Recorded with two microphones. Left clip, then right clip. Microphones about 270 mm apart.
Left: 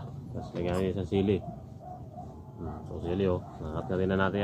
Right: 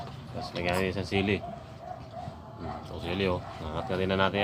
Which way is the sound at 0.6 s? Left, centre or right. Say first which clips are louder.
Right 2 dB; centre.